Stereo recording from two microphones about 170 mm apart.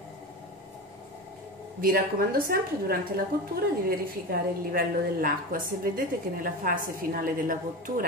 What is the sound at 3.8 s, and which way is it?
A woman's voice, 60° right (ahead or behind).